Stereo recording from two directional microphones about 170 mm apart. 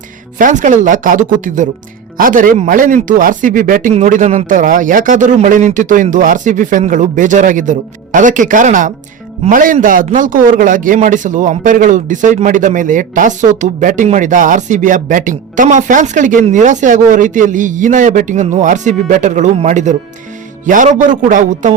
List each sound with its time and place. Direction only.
0.3 s a man's voice: 50° right (ahead or behind)